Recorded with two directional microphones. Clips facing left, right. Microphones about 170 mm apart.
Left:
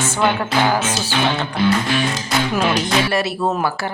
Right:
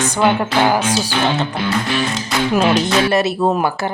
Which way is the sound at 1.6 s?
Centre (ahead or behind).